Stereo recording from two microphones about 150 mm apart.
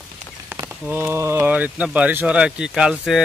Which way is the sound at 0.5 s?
15° right (ahead or behind).